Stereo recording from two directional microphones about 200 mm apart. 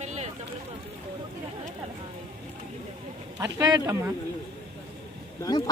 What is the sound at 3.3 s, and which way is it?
Speech, 15° right (ahead or behind).